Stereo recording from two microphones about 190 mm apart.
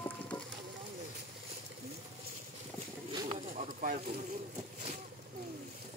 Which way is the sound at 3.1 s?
30° right (ahead or behind).